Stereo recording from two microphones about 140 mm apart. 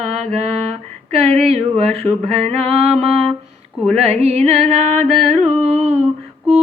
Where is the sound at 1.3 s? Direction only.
50° right (ahead or behind).